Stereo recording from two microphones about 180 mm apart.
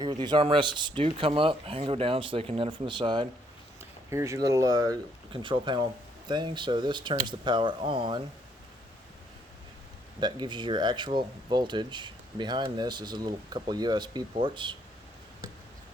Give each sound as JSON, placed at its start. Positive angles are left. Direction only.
{"t": 0.0, "sound": "speech", "side_deg": -25}
{"t": 10.2, "sound": "speech", "side_deg": -25}